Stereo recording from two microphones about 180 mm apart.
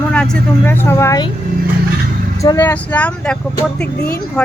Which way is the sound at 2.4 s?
15° left (ahead or behind).